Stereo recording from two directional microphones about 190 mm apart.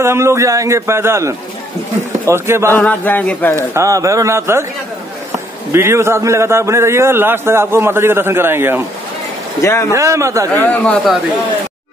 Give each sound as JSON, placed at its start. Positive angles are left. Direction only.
{"t": 0.0, "sound": "a man's voice", "side_deg": -15}
{"t": 2.7, "sound": "a man's voice", "side_deg": 10}
{"t": 3.5, "sound": "a man's voice", "side_deg": -15}
{"t": 5.7, "sound": "a man's voice", "side_deg": -15}
{"t": 9.6, "sound": "a man's voice", "side_deg": 15}
{"t": 9.9, "sound": "a man's voice", "side_deg": -15}
{"t": 10.5, "sound": "a man's voice", "side_deg": 10}